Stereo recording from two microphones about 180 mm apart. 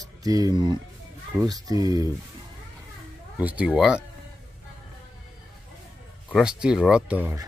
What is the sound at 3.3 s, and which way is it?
Speech, 10° right (ahead or behind).